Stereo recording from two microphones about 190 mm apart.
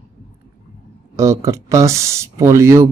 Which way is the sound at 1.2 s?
15° right (ahead or behind).